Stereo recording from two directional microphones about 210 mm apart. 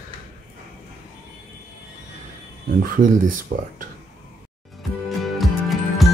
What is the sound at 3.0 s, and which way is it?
Speech, 40° right (ahead or behind).